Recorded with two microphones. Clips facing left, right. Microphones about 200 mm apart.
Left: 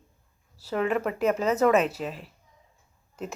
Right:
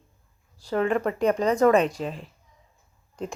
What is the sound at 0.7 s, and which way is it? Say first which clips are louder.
Speech: right 2 dB; 35° right (ahead or behind).